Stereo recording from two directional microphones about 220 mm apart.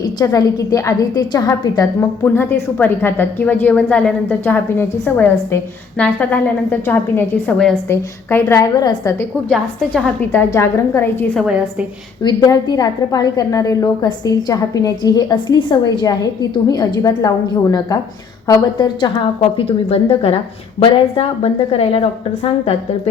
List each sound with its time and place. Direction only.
0.0 s a woman's voice: 15° left (ahead or behind)
9.5 s a woman's voice: 5° left (ahead or behind)
11.4 s a woman's voice: 5° right (ahead or behind)
12.2 s a woman's voice: 20° left (ahead or behind)